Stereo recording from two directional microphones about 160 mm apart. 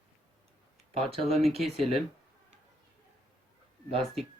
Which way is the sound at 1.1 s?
35° right (ahead or behind).